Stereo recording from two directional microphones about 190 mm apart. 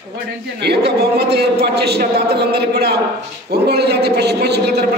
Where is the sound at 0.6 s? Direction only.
60° right (ahead or behind).